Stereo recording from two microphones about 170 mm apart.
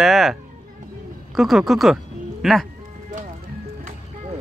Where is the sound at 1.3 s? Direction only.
Centre (ahead or behind).